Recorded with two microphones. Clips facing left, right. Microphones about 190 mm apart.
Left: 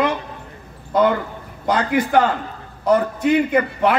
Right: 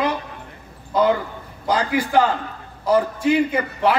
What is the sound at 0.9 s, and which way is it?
A man's voice, 55° left (ahead or behind).